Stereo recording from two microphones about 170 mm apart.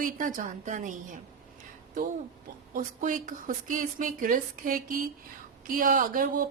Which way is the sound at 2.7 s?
50° right (ahead or behind).